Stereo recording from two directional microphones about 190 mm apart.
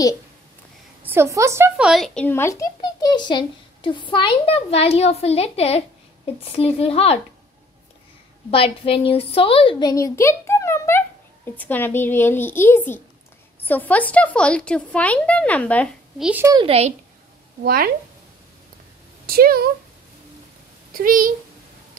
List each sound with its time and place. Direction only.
1.0 s a woman's voice: 15° right (ahead or behind)
1.9 s a child's voice: centre (ahead or behind); by 7.2 s 30° left (ahead or behind)
8.5 s a child's voice: 30° left (ahead or behind); by 16.3 s 5° left (ahead or behind)
16.3 s a woman's voice: 10° right (ahead or behind)
16.5 s speech: 30° right (ahead or behind)
17.6 s speech: 50° right (ahead or behind)
19.2 s speech: 50° right (ahead or behind)
20.9 s speech: 45° right (ahead or behind)